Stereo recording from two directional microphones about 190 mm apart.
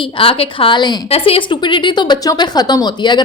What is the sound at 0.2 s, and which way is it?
A woman's voice, 30° left (ahead or behind).